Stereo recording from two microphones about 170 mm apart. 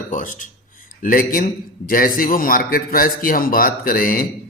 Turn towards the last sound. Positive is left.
turn(degrees=55)  # may be behind; listen again after turning